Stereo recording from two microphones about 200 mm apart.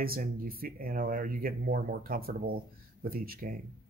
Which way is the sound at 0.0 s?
45° right (ahead or behind).